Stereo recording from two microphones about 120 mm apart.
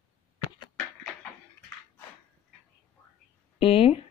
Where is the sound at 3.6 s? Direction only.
50° left (ahead or behind).